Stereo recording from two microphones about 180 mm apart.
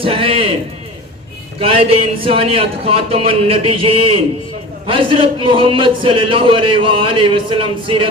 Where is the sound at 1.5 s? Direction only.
30° right (ahead or behind).